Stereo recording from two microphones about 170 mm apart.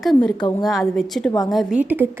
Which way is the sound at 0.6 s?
Centre (ahead or behind).